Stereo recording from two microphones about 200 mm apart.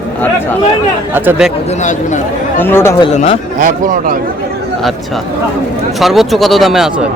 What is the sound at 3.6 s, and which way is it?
Speech, 45° right (ahead or behind).